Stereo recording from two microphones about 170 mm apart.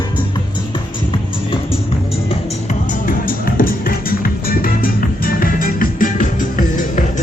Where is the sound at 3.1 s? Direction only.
55° left (ahead or behind).